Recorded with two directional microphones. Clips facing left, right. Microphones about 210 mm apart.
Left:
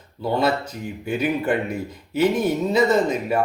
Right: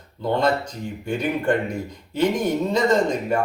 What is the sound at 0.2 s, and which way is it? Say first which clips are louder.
A man's voice: even; 5° left (ahead or behind).